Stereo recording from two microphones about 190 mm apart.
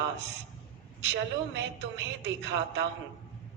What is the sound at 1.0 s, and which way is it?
A woman's voice, 70° right (ahead or behind).